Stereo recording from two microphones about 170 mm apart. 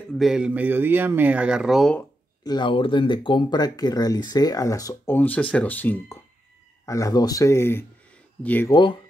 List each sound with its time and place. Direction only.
0.1 s speech: centre (ahead or behind)
2.4 s speech: 25° left (ahead or behind); by 8.7 s 10° left (ahead or behind)